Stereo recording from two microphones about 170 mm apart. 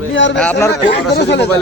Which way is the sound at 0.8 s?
85° left.